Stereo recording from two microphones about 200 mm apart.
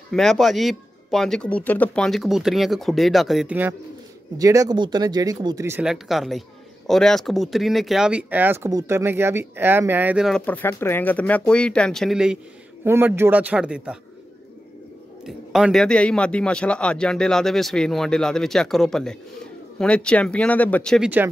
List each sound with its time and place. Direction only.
0.1 s speech: centre (ahead or behind)
15.2 s speech: centre (ahead or behind)